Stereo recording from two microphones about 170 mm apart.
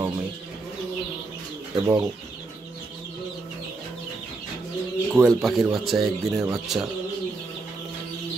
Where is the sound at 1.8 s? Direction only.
15° right (ahead or behind).